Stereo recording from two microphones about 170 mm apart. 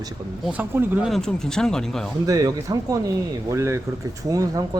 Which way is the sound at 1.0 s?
Centre (ahead or behind).